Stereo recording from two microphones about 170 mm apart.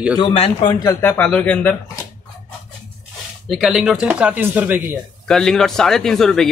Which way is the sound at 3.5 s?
Centre (ahead or behind).